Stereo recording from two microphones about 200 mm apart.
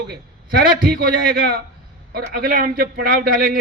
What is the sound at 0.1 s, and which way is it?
A man's voice, 45° right (ahead or behind).